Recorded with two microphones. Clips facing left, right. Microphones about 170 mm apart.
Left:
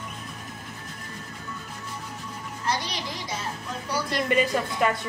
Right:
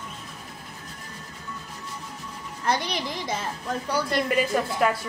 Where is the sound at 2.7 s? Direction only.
55° right (ahead or behind).